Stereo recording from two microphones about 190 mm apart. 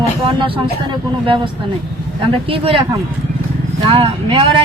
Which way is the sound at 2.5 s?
30° right (ahead or behind).